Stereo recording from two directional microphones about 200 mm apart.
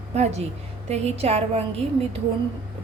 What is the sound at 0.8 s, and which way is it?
Speech, 30° right (ahead or behind).